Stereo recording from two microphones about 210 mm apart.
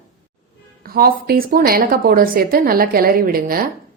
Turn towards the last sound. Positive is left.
turn(degrees=-45)  # may be behind; listen again after turning